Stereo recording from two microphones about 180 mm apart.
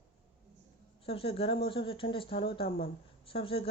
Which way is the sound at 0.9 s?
30° left (ahead or behind).